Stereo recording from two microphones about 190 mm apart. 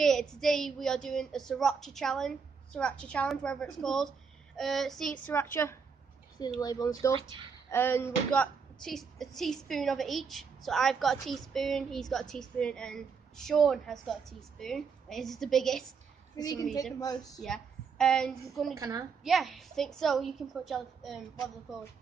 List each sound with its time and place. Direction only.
0.0 s a woman's voice: centre (ahead or behind); by 7.1 s 20° left (ahead or behind)
7.2 s a woman's voice: 25° right (ahead or behind)
7.7 s a woman's voice: 10° left (ahead or behind)
16.3 s speech: 20° left (ahead or behind)
17.4 s a woman's voice: 5° left (ahead or behind)
18.8 s a woman's voice: 20° right (ahead or behind)
19.2 s a woman's voice: centre (ahead or behind)